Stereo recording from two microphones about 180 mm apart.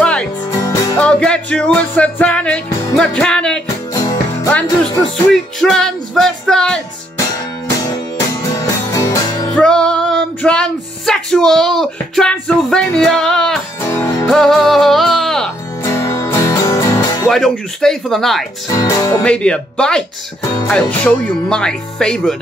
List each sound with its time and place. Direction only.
0.0 s music: 5° left (ahead or behind)
0.5 s music: 20° left (ahead or behind)
0.9 s music: 5° left (ahead or behind)
3.6 s music: 20° left (ahead or behind)
4.5 s music: 5° left (ahead or behind)
8.4 s music: 15° left (ahead or behind)
9.6 s female singing: 5° left (ahead or behind)
13.7 s music: 15° left (ahead or behind)
14.2 s music: centre (ahead or behind)
15.8 s music: 15° left (ahead or behind)
17.3 s music: centre (ahead or behind)
18.7 s speech: 20° left (ahead or behind)
19.2 s music: 5° left (ahead or behind)